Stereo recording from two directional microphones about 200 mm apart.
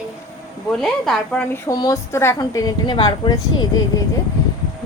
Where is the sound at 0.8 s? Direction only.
5° left (ahead or behind).